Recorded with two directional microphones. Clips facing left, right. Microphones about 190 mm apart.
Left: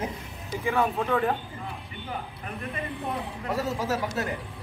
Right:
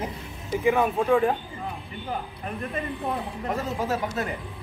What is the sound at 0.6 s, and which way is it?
Speech, 15° right (ahead or behind).